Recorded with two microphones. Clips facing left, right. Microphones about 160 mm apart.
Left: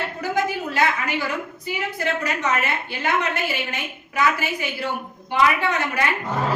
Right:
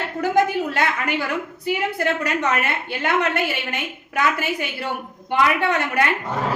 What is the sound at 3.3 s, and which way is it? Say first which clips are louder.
A woman's voice: right 2 dB; 60° right (ahead or behind).